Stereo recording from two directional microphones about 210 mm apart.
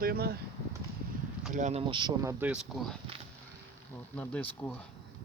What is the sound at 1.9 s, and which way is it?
Speech, 20° right (ahead or behind).